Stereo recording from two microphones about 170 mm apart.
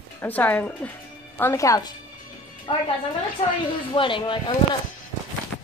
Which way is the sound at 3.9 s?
30° left (ahead or behind).